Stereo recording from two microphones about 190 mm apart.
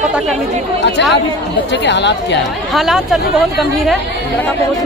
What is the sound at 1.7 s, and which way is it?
Speech, 65° left (ahead or behind).